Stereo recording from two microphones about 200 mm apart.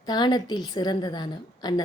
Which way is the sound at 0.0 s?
20° left (ahead or behind).